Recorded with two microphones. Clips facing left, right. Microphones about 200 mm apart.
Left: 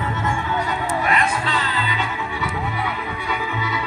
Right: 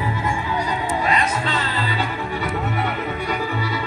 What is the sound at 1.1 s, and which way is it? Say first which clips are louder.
Music: even; 25° right (ahead or behind).